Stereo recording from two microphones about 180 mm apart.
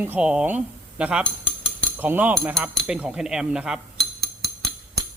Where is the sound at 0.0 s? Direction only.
10° right (ahead or behind).